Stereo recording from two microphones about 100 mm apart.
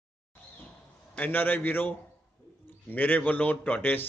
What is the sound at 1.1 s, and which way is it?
A man's voice, 20° left (ahead or behind).